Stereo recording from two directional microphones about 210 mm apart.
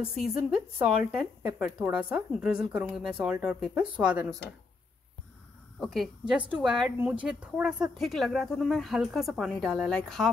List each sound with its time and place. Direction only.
0.0 s speech: 5° right (ahead or behind)
5.8 s speech: centre (ahead or behind)